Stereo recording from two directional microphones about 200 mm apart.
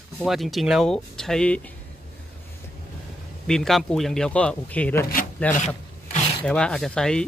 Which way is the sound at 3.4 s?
Centre (ahead or behind).